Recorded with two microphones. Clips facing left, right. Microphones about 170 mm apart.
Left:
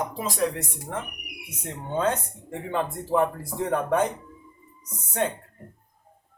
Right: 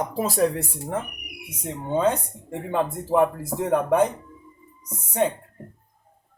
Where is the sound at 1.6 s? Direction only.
10° right (ahead or behind).